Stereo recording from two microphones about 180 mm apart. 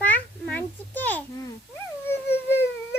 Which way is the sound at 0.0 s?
10° left (ahead or behind).